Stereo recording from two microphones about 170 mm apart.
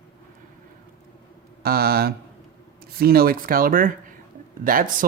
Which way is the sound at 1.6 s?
65° right (ahead or behind).